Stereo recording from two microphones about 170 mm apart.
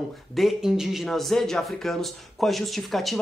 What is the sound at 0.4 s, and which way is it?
Speech, centre (ahead or behind).